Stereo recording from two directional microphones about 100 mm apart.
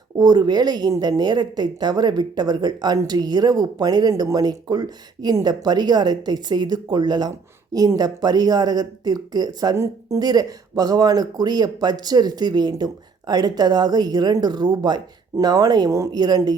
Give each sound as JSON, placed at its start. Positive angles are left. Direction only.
{"t": 0.2, "sound": "speech", "side_deg": -45}
{"t": 9.7, "sound": "speech", "side_deg": -30}